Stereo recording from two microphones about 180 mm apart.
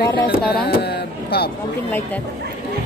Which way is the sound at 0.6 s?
60° left (ahead or behind).